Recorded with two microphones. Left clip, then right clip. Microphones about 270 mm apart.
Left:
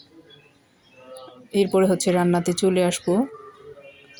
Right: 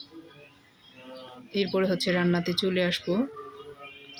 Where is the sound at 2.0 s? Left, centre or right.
Centre.